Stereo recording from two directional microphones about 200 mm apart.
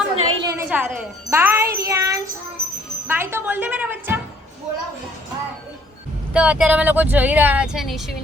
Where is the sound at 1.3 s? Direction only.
15° right (ahead or behind).